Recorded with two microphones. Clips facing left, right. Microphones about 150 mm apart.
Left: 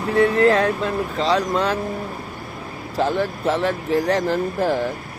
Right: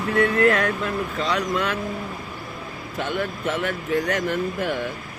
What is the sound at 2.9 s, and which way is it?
Speech, 35° left (ahead or behind).